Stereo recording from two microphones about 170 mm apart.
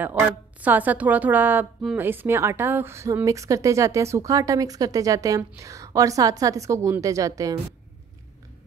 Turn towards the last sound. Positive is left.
turn(degrees=-20)  # may be behind; listen again after turning